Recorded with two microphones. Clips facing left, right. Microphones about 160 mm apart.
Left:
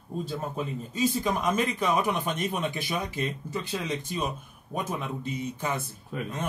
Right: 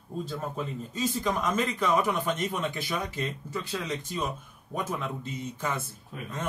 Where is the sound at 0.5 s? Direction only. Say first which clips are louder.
Left 3 dB; 10° left (ahead or behind).